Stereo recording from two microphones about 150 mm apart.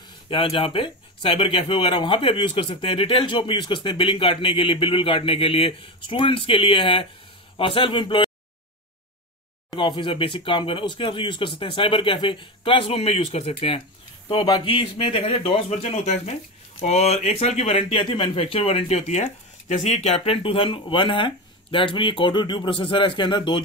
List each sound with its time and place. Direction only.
0.3 s speech: 35° left (ahead or behind)
9.7 s speech: 35° left (ahead or behind)